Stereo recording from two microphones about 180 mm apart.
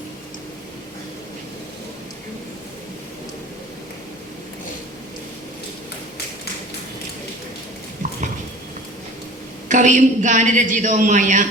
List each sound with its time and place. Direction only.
9.6 s a woman's voice: 45° right (ahead or behind)